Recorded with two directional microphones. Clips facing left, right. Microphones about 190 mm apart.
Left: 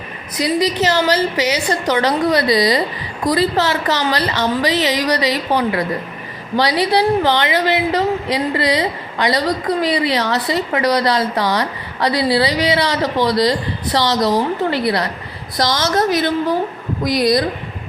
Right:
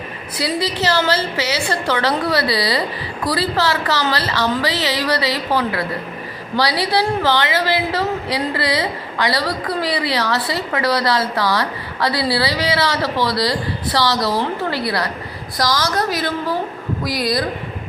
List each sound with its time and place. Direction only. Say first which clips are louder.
0.3 s a woman's voice: left 4 dB; 20° left (ahead or behind)